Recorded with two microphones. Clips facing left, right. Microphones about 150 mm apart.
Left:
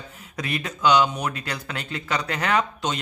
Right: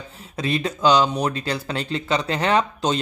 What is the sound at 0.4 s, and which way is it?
Speech, 30° right (ahead or behind).